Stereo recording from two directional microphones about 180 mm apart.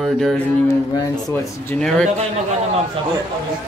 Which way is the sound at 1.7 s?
5° left (ahead or behind).